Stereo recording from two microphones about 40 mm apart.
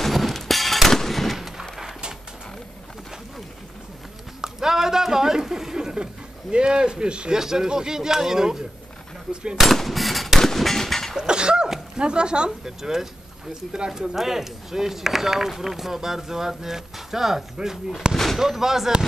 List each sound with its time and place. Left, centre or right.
0.0 s gunshot: centre
4.4 s a sound: centre
6.5 s speech: right
9.3 s speech: right
9.6 s gunshot: centre
11.1 s a sound: right
12.0 s speech: right
18.1 s speech: centre
18.4 s speech: centre